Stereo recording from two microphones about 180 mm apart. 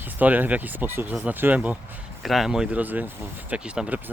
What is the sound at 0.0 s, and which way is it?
Speech, 10° right (ahead or behind).